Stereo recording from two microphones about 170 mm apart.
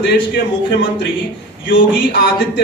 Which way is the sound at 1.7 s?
90° left.